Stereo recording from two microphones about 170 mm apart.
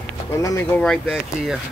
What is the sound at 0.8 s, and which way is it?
Speech, 5° left (ahead or behind).